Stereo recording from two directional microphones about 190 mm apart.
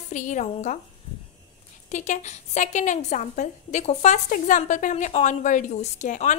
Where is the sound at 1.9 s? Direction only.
40° left (ahead or behind).